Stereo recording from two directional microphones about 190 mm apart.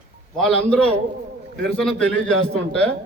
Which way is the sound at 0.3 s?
Centre (ahead or behind).